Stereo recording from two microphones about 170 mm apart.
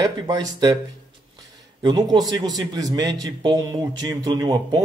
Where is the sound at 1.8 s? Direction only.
25° right (ahead or behind).